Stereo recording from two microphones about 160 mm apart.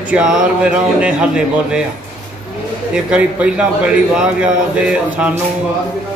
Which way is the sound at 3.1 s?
5° right (ahead or behind).